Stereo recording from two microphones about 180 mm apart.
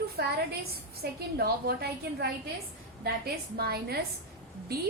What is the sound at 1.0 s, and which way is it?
A woman's voice, 60° right (ahead or behind).